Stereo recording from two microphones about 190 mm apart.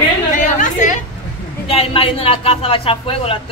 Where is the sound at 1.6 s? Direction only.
30° left (ahead or behind).